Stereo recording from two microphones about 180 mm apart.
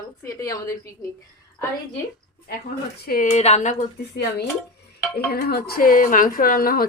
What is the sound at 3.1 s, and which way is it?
Speech, 45° left (ahead or behind).